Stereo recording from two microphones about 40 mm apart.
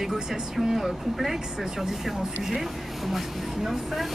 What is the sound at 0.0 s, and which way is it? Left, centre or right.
Speech, centre.